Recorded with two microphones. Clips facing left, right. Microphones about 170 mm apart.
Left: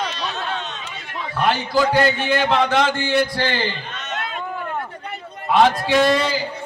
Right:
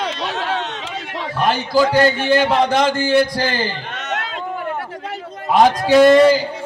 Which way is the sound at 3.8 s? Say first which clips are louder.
Right 3 dB; 75° right (ahead or behind).